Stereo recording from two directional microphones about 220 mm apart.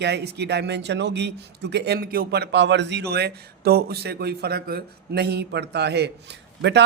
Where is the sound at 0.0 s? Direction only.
50° right (ahead or behind).